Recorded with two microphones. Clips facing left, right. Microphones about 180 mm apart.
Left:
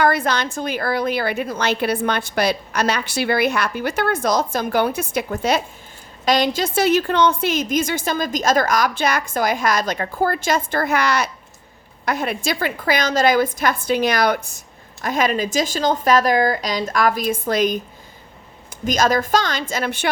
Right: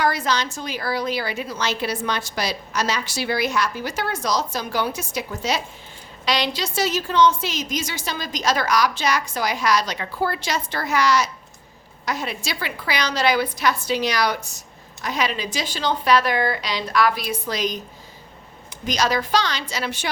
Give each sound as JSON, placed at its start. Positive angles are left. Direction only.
{"t": 0.0, "sound": "a woman's voice", "side_deg": 55}
{"t": 18.9, "sound": "a woman's voice", "side_deg": 50}